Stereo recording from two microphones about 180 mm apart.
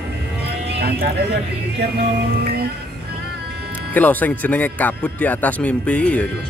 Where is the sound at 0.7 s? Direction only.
65° right (ahead or behind).